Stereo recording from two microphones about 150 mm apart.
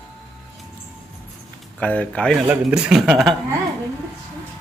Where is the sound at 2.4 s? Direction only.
5° right (ahead or behind).